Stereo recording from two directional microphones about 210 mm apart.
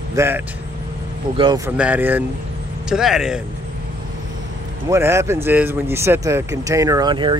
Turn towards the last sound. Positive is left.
turn(degrees=-20)  # may be behind; listen again after turning